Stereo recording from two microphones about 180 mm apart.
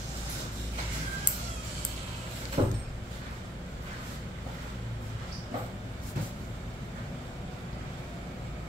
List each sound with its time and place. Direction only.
2.6 s vehicle: 35° right (ahead or behind)